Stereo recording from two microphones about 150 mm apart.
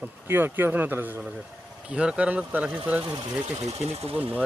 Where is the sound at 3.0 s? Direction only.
30° right (ahead or behind).